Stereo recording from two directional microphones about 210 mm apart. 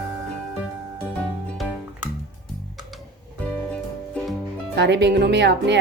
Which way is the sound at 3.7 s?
5° left (ahead or behind).